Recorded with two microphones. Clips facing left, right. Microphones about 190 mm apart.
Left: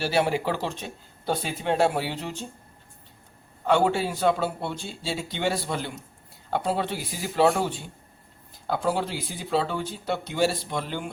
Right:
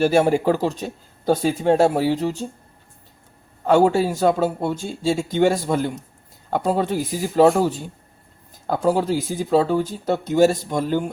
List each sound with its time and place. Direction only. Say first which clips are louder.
0.0 s speech: right 8 dB; 45° right (ahead or behind)
3.7 s speech: right 6 dB; 40° right (ahead or behind)